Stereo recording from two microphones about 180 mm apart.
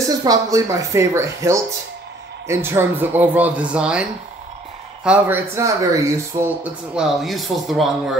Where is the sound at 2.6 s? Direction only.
10° right (ahead or behind).